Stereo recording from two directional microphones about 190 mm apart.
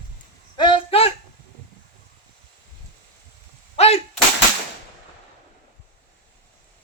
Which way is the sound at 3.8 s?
35° left (ahead or behind).